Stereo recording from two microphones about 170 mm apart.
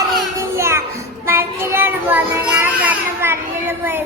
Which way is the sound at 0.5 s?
15° right (ahead or behind).